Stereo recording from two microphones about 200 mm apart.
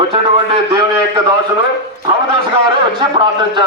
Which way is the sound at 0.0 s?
25° right (ahead or behind).